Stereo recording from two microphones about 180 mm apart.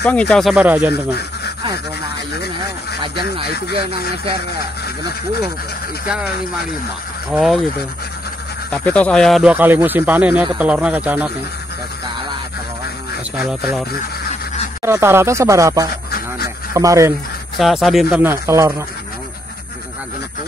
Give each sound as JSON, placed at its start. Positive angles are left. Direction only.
{"t": 0.0, "sound": "speech", "side_deg": 5}
{"t": 3.0, "sound": "speech", "side_deg": -30}
{"t": 6.0, "sound": "speech", "side_deg": -5}
{"t": 7.3, "sound": "speech", "side_deg": 0}
{"t": 8.7, "sound": "speech", "side_deg": 5}
{"t": 13.4, "sound": "speech", "side_deg": -10}
{"t": 14.8, "sound": "speech", "side_deg": -15}
{"t": 17.6, "sound": "speech", "side_deg": 0}
{"t": 18.2, "sound": "speech", "side_deg": -15}